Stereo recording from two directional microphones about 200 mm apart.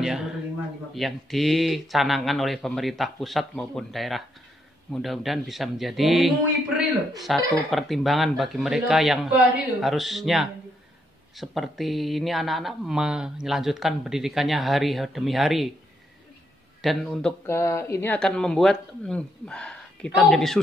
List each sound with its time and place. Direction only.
0.0 s speech: centre (ahead or behind)
16.8 s speech: centre (ahead or behind)
17.5 s speech: 15° left (ahead or behind)